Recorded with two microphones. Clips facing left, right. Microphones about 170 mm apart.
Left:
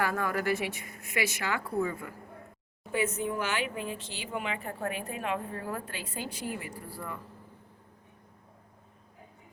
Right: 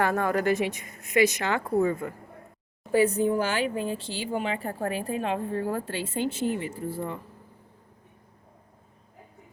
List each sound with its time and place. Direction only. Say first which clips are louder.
0.0 s a woman's voice: right 5 dB; 25° right (ahead or behind)
1.6 s speech: right 7 dB; 45° right (ahead or behind)
2.9 s speech: right 8 dB; 35° right (ahead or behind)